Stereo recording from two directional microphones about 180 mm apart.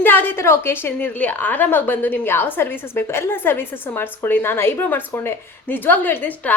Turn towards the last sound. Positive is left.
turn(degrees=10)  # may be behind; listen again after turning